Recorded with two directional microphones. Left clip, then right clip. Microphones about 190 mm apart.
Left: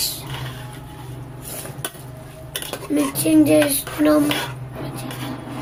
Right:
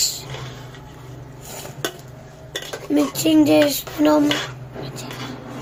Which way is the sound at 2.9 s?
20° right (ahead or behind).